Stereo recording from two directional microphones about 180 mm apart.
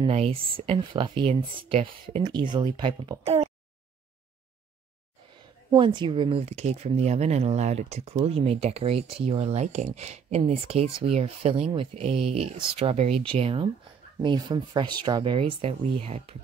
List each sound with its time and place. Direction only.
0.0 s speech: 35° right (ahead or behind)
5.8 s speech: 25° right (ahead or behind)